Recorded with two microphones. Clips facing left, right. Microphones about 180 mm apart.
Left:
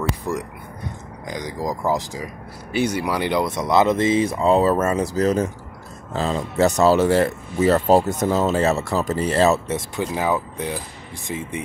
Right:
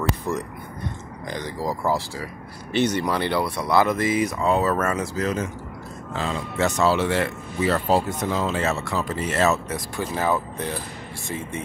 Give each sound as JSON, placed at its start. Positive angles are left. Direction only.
{"t": 0.3, "sound": "speech", "side_deg": 15}